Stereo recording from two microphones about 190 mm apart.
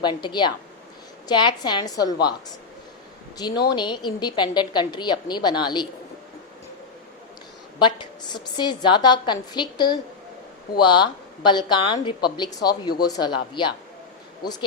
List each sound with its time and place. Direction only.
0.0 s a woman's voice: 25° left (ahead or behind)
3.4 s a woman's voice: 20° left (ahead or behind)
7.8 s a woman's voice: 25° left (ahead or behind)